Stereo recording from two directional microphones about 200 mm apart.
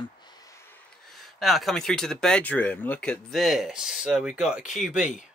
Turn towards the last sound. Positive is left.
turn(degrees=-5)  # may be behind; listen again after turning